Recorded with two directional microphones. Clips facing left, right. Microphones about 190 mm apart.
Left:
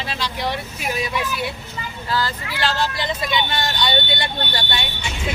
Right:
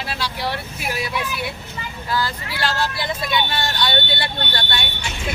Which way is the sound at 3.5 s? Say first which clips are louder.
Left 1 dB; 10° left (ahead or behind).